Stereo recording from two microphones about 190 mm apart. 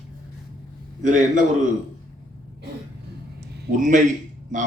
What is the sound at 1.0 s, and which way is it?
Speech, 40° right (ahead or behind).